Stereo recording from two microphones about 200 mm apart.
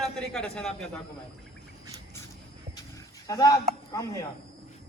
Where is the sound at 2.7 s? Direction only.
20° left (ahead or behind).